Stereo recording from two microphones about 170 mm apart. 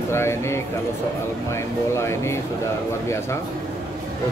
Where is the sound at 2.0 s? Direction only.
15° left (ahead or behind).